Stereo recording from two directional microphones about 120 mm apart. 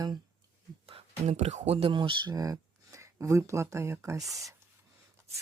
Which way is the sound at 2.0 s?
40° right (ahead or behind).